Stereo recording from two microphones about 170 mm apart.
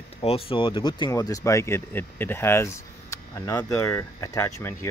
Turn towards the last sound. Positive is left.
turn(degrees=15)  # may be behind; listen again after turning